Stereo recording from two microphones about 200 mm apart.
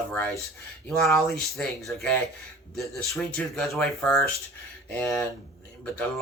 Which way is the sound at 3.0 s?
15° left (ahead or behind).